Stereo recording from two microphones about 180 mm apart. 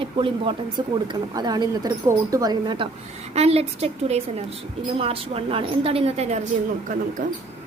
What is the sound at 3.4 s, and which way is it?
A woman's voice, 35° right (ahead or behind).